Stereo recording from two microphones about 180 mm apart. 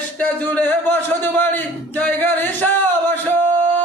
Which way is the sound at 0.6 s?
10° left (ahead or behind).